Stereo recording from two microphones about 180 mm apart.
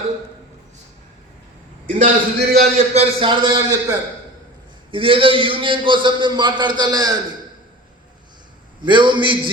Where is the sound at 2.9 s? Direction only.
30° right (ahead or behind).